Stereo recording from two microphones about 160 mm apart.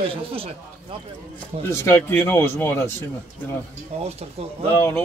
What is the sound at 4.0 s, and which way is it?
Speech, 40° right (ahead or behind).